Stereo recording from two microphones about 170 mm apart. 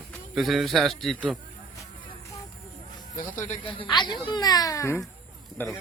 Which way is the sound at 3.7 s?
30° left (ahead or behind).